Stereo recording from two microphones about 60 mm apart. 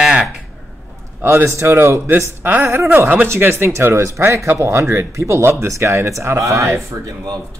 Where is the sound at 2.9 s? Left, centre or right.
Right.